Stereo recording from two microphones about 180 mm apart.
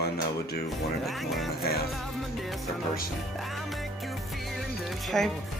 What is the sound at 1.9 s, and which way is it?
Speech, centre (ahead or behind).